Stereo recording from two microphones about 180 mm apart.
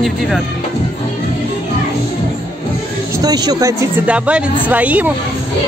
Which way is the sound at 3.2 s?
20° right (ahead or behind).